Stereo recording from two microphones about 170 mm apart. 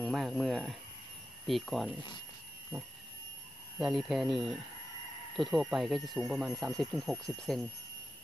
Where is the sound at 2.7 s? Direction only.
5° right (ahead or behind).